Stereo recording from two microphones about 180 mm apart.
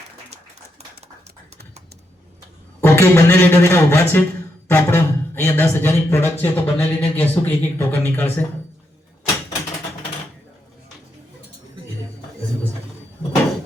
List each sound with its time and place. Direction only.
2.8 s speech: 15° left (ahead or behind)